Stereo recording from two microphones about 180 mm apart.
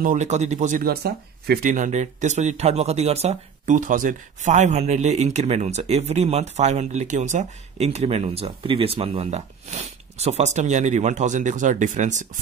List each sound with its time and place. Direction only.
0.0 s speech: 40° right (ahead or behind)